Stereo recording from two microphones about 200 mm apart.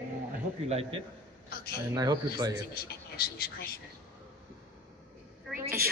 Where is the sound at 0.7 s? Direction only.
30° right (ahead or behind).